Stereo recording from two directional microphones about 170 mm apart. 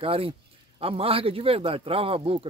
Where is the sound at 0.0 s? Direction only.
35° right (ahead or behind).